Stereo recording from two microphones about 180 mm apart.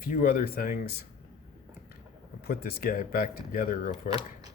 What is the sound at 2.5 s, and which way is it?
Speech, 60° left (ahead or behind).